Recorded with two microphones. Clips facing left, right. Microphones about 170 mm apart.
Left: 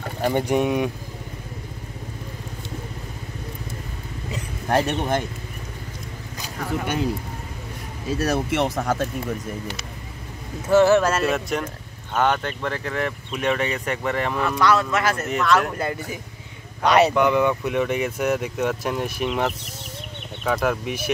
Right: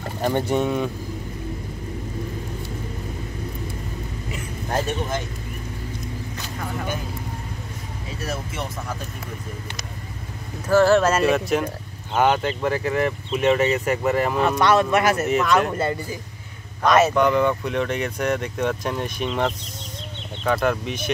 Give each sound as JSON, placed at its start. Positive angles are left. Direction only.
{"t": 0.2, "sound": "speech", "side_deg": 10}
{"t": 4.6, "sound": "speech", "side_deg": 65}
{"t": 8.1, "sound": "speech", "side_deg": 75}
{"t": 10.7, "sound": "speech", "side_deg": 20}
{"t": 11.0, "sound": "speech", "side_deg": -5}
{"t": 14.6, "sound": "speech", "side_deg": -20}
{"t": 15.2, "sound": "speech", "side_deg": 0}
{"t": 17.1, "sound": "speech", "side_deg": 10}